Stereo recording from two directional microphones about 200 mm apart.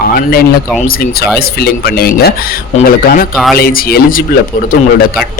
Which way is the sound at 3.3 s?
Centre (ahead or behind).